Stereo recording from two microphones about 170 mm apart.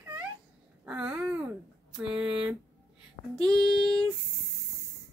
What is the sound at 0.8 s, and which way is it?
Babbling, 5° right (ahead or behind).